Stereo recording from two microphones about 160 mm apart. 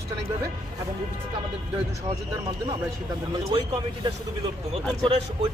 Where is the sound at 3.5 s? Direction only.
35° right (ahead or behind).